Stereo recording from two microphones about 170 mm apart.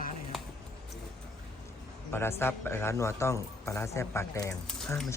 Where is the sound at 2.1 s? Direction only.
15° left (ahead or behind).